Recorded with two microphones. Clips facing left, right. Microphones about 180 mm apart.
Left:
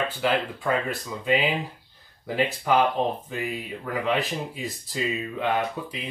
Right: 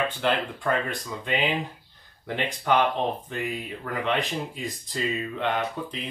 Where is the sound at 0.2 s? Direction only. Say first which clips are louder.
Left 1 dB; 5° left (ahead or behind).